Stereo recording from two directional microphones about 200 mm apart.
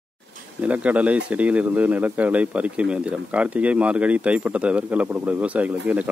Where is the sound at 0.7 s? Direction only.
5° right (ahead or behind).